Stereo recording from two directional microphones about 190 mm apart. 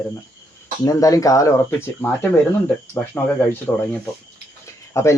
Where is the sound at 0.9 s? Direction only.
20° left (ahead or behind).